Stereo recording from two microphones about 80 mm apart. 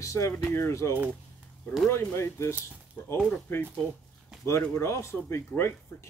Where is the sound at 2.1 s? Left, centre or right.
Left.